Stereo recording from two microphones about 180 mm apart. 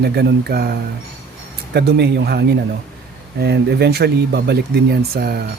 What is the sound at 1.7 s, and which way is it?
Speech, 65° right (ahead or behind).